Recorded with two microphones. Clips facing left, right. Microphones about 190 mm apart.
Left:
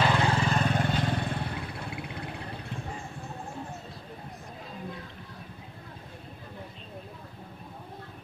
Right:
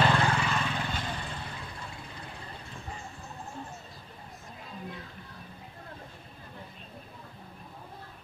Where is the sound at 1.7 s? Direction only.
65° left (ahead or behind).